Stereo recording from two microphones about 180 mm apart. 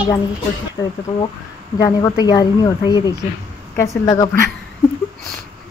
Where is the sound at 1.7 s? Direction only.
20° left (ahead or behind).